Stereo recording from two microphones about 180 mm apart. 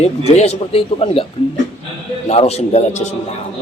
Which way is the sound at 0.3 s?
35° left (ahead or behind).